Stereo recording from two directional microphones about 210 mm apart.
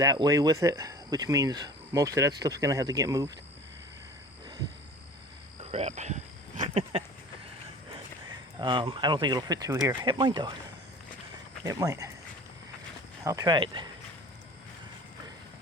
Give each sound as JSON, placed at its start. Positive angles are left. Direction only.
{"t": 0.0, "sound": "speech", "side_deg": -15}
{"t": 5.7, "sound": "speech", "side_deg": -30}
{"t": 6.6, "sound": "a sound", "side_deg": -30}
{"t": 7.9, "sound": "speech", "side_deg": -25}
{"t": 11.6, "sound": "speech", "side_deg": -15}
{"t": 13.2, "sound": "speech", "side_deg": -15}